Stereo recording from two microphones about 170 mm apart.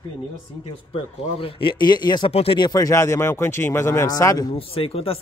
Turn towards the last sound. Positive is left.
turn(degrees=35)  # may be behind; listen again after turning